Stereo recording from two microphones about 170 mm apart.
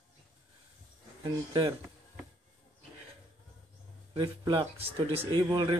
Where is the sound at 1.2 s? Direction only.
25° right (ahead or behind).